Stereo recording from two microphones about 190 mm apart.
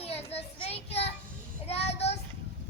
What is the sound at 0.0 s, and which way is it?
Child singing, 30° left (ahead or behind).